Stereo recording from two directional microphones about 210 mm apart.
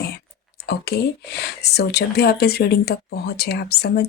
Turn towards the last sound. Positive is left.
turn(degrees=50)  # may be behind; listen again after turning